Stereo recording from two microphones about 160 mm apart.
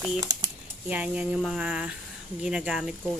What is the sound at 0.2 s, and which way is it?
Speech, 25° right (ahead or behind).